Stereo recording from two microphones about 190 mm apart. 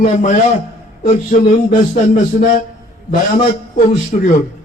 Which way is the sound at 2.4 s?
35° left (ahead or behind).